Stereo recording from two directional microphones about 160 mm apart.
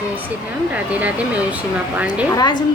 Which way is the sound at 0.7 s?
10° right (ahead or behind).